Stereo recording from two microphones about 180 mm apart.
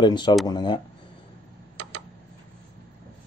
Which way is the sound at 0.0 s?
25° left (ahead or behind).